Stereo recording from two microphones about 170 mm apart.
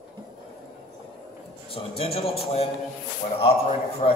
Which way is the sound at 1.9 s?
35° left (ahead or behind).